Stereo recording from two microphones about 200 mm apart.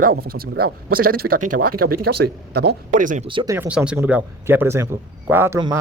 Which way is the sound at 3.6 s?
5° right (ahead or behind).